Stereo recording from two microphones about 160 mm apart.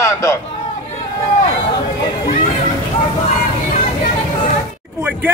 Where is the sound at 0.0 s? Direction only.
20° left (ahead or behind).